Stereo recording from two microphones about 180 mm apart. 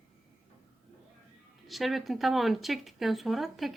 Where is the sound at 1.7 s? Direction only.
Centre (ahead or behind).